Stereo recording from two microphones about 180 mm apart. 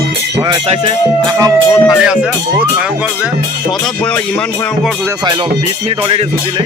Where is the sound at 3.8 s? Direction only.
5° left (ahead or behind).